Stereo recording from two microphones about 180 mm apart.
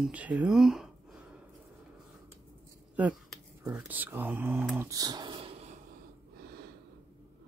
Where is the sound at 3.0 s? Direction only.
5° right (ahead or behind).